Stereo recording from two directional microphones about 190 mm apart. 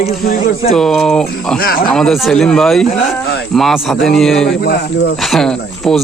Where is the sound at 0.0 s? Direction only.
35° left (ahead or behind).